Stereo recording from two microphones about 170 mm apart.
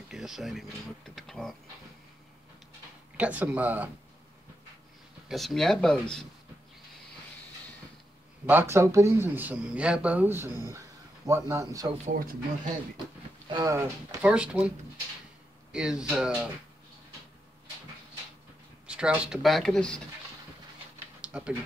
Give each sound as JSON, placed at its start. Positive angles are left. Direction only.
{"t": 0.1, "sound": "speech", "side_deg": 0}
{"t": 3.2, "sound": "speech", "side_deg": -10}
{"t": 5.3, "sound": "speech", "side_deg": 0}
{"t": 8.5, "sound": "a man's voice", "side_deg": -15}
{"t": 13.5, "sound": "a man's voice", "side_deg": -20}
{"t": 14.2, "sound": "speech", "side_deg": -5}
{"t": 15.7, "sound": "speech", "side_deg": -5}
{"t": 18.9, "sound": "speech", "side_deg": -5}
{"t": 21.2, "sound": "a sound", "side_deg": -5}